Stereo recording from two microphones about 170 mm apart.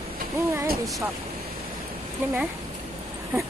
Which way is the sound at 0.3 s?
15° right (ahead or behind).